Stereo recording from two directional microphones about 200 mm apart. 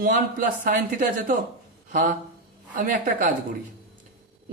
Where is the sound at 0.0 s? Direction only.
45° right (ahead or behind).